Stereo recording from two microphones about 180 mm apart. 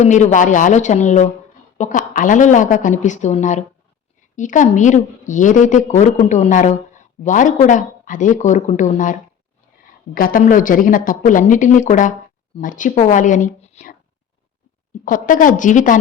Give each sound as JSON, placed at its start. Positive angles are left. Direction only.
{"t": 0.0, "sound": "a woman's voice", "side_deg": 40}
{"t": 10.2, "sound": "a woman's voice", "side_deg": 50}
{"t": 15.0, "sound": "a woman's voice", "side_deg": 50}